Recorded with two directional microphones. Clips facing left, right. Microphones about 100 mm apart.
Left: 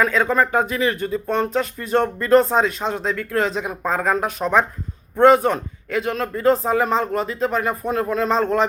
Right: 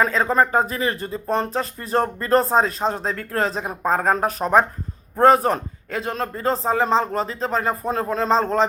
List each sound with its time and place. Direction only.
0.0 s speech: 35° right (ahead or behind)